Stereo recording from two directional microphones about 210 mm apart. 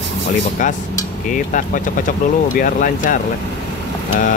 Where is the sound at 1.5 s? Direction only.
40° left (ahead or behind).